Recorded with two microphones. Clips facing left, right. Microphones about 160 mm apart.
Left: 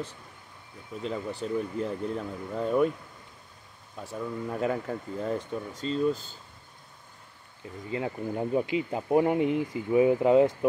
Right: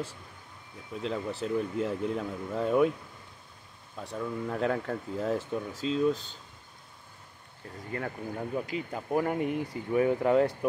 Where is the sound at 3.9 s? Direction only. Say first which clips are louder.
Even; centre (ahead or behind).